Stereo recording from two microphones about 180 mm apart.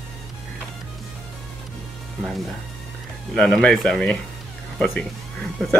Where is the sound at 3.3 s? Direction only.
5° left (ahead or behind).